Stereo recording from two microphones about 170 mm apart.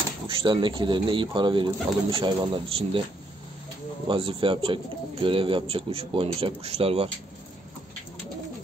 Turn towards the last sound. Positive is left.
turn(degrees=-35)  # may be behind; listen again after turning